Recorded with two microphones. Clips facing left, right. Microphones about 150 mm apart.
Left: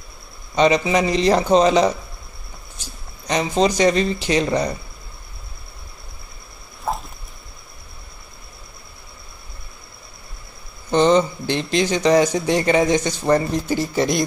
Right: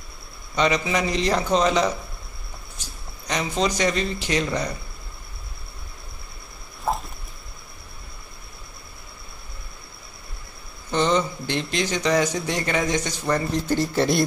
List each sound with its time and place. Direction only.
0.6 s speech: 25° left (ahead or behind)
3.3 s speech: 30° left (ahead or behind)
6.8 s a sound: centre (ahead or behind)
10.9 s speech: 30° left (ahead or behind)
13.7 s speech: centre (ahead or behind)